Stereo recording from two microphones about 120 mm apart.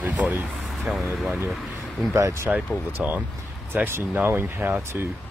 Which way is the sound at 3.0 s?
10° right (ahead or behind).